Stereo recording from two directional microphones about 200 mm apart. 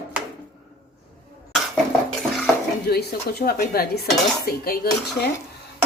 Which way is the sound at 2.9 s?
50° left (ahead or behind).